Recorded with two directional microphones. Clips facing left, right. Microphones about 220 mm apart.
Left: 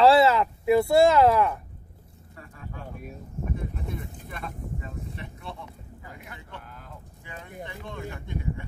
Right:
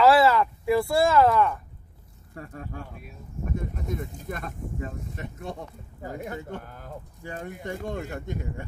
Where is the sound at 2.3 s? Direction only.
45° right (ahead or behind).